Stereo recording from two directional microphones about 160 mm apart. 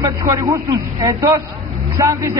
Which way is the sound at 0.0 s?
20° right (ahead or behind).